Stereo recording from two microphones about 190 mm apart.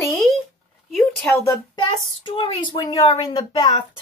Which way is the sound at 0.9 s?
5° left (ahead or behind).